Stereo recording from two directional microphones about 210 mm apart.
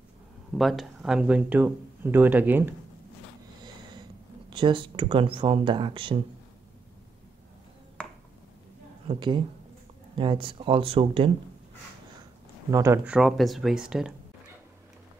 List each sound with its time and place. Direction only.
0.6 s speech: centre (ahead or behind)
4.5 s speech: 25° right (ahead or behind)
9.0 s a woman's voice: 25° right (ahead or behind)
12.7 s speech: 15° right (ahead or behind)